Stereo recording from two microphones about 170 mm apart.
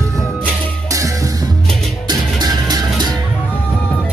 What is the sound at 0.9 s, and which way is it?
Music, 20° right (ahead or behind).